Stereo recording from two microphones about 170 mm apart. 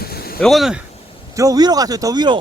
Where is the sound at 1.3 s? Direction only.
20° right (ahead or behind).